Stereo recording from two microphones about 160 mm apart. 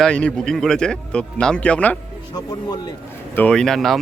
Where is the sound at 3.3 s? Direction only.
5° left (ahead or behind).